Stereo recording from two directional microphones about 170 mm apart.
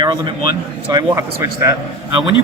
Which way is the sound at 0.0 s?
25° right (ahead or behind).